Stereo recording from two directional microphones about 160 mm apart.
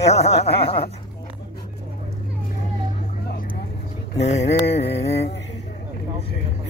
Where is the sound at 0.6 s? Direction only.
35° left (ahead or behind).